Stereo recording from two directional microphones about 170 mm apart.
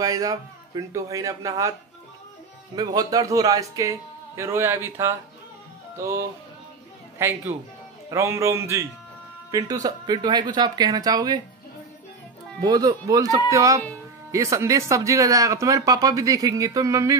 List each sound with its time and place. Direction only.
0.0 s speech: 20° right (ahead or behind)
2.7 s speech: 25° right (ahead or behind)
5.9 s music: 15° right (ahead or behind)
9.5 s speech: 20° right (ahead or behind)
12.5 s speech: 20° right (ahead or behind)
13.5 s music: 20° right (ahead or behind)
14.3 s speech: 20° right (ahead or behind)